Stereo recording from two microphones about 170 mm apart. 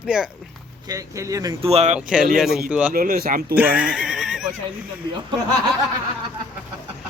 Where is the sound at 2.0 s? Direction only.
5° right (ahead or behind).